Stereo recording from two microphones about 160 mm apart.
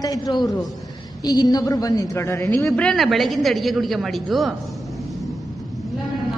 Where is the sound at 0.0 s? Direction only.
25° left (ahead or behind).